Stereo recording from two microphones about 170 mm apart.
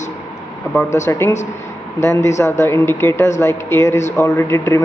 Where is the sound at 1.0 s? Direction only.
15° left (ahead or behind).